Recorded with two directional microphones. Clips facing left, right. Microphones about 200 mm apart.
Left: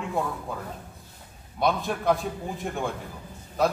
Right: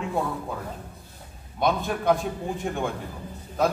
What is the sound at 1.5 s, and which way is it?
A man's voice, centre (ahead or behind).